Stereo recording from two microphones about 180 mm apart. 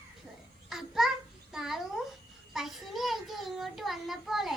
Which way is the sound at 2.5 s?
Centre (ahead or behind).